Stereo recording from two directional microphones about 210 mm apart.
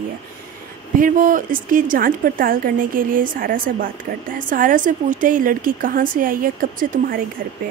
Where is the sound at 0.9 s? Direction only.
40° right (ahead or behind).